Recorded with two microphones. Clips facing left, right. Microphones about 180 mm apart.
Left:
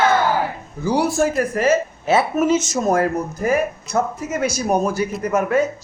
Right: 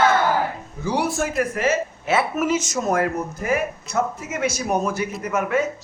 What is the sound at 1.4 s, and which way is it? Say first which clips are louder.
Speech: left 4 dB; 35° left (ahead or behind).